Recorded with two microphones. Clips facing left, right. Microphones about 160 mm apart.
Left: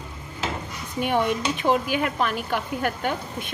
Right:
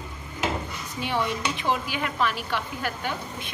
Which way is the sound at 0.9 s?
50° left (ahead or behind).